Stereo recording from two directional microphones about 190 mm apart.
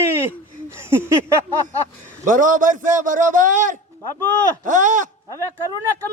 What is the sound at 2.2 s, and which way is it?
A man's voice, 45° right (ahead or behind).